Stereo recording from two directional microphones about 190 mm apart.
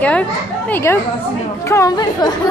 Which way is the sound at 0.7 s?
10° left (ahead or behind).